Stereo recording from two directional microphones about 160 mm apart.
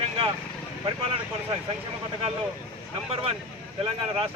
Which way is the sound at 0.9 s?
35° right (ahead or behind).